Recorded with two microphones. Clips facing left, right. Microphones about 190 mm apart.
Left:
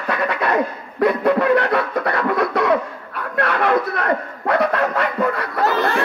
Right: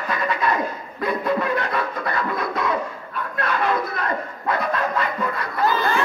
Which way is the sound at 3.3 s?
70° left (ahead or behind).